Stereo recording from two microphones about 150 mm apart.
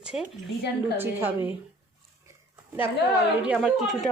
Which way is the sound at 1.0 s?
15° right (ahead or behind).